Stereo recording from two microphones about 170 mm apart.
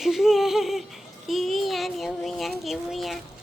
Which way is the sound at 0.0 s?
Centre (ahead or behind).